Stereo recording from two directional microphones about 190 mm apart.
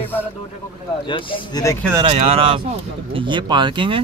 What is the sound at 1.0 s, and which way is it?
Speech, 25° left (ahead or behind).